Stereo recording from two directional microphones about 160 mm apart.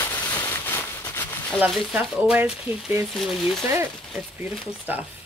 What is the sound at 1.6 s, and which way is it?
Speech, 5° right (ahead or behind).